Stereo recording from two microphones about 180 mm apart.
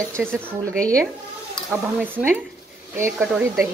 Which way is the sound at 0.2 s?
10° right (ahead or behind).